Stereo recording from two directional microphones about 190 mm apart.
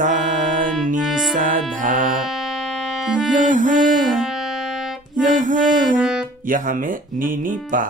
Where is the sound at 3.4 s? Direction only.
45° right (ahead or behind).